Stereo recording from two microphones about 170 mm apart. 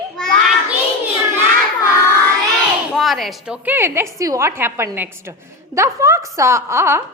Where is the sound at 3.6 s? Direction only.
15° right (ahead or behind).